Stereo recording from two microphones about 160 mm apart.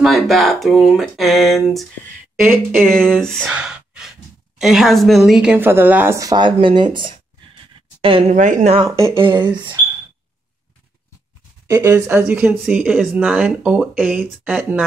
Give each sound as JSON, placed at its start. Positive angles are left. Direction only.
{"t": 0.0, "sound": "a woman's voice", "side_deg": 0}
{"t": 8.4, "sound": "speech", "side_deg": -50}
{"t": 8.8, "sound": "speech", "side_deg": -20}
{"t": 9.1, "sound": "speech", "side_deg": -30}
{"t": 9.4, "sound": "a woman's voice", "side_deg": -10}
{"t": 11.6, "sound": "a woman's voice", "side_deg": -20}